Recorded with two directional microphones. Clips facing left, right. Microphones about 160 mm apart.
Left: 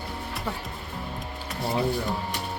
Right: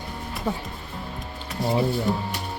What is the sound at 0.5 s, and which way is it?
Music, 15° right (ahead or behind).